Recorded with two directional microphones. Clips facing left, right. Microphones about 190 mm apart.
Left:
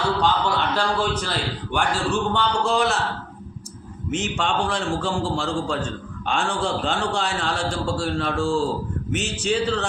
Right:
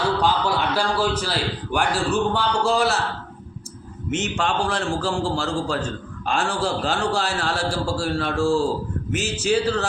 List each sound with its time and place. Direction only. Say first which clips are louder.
0.2 s a man's voice: even; 10° right (ahead or behind)
4.1 s a man's voice: right 1 dB; centre (ahead or behind)